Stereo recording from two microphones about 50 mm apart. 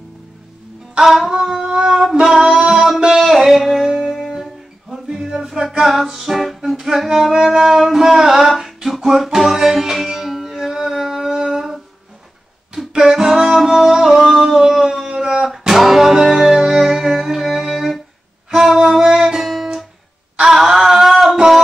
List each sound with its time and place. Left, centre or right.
1.0 s a sound: centre
1.4 s music: centre
3.2 s music: centre
11.3 s humming: centre
12.7 s music: centre
20.3 s wail: centre